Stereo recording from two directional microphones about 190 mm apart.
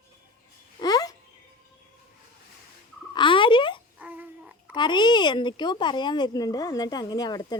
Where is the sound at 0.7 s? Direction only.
20° left (ahead or behind).